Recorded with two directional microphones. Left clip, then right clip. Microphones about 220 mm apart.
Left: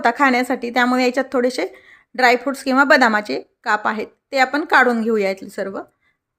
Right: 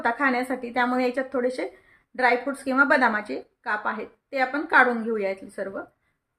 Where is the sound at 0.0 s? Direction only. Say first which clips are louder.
Left 8 dB; 45° left (ahead or behind).